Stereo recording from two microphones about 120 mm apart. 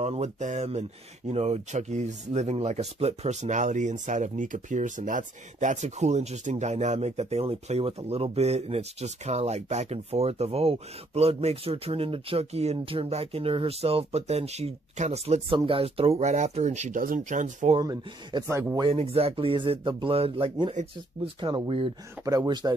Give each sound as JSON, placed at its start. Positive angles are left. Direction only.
{"t": 0.0, "sound": "speech", "side_deg": -65}
{"t": 15.5, "sound": "speech", "side_deg": -50}
{"t": 17.7, "sound": "speech", "side_deg": -40}
{"t": 18.5, "sound": "speech", "side_deg": -20}
{"t": 18.9, "sound": "speech", "side_deg": -55}
{"t": 22.2, "sound": "speech", "side_deg": -25}